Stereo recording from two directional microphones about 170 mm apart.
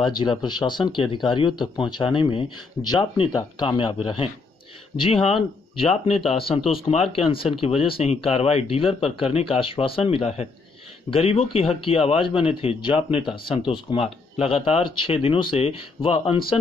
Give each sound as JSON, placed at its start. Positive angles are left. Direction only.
{"t": 0.0, "sound": "speech", "side_deg": 25}